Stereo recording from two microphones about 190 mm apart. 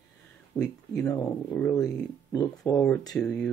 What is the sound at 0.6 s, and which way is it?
Speech, 10° left (ahead or behind).